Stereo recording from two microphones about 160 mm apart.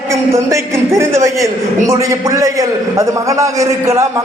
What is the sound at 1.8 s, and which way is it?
A man's voice, 20° right (ahead or behind).